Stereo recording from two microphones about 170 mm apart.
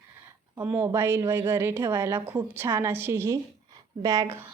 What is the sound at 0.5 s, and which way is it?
A woman's voice, 15° right (ahead or behind).